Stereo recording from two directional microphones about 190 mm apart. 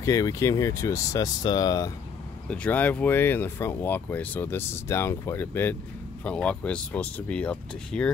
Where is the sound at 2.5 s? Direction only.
5° left (ahead or behind).